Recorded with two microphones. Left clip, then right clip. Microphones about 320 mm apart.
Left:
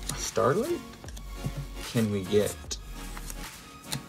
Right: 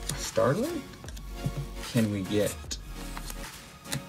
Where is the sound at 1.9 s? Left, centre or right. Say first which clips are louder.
Left 3 dB; centre.